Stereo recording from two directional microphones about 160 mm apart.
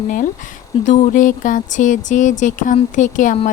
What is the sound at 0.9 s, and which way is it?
Speech, 50° left (ahead or behind).